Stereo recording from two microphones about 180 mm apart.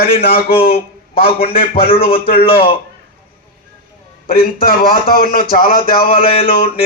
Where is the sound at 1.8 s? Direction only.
30° left (ahead or behind).